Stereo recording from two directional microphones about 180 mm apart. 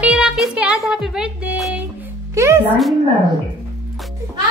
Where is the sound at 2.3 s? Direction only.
15° right (ahead or behind).